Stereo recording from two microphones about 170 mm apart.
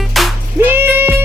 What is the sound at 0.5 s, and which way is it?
Music, 10° right (ahead or behind).